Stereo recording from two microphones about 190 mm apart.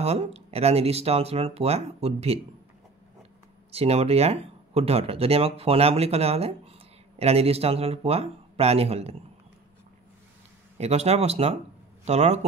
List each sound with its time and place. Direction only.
0.0 s speech: 35° right (ahead or behind)
3.7 s speech: 30° right (ahead or behind)
10.8 s a man's voice: 35° right (ahead or behind)